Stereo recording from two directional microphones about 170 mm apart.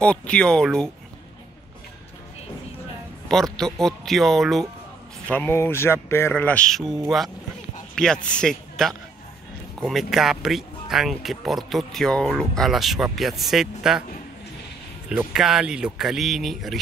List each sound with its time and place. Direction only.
0.0 s speech: 5° left (ahead or behind)
3.3 s speech: centre (ahead or behind)
5.3 s speech: 10° left (ahead or behind)
15.0 s speech: 5° right (ahead or behind)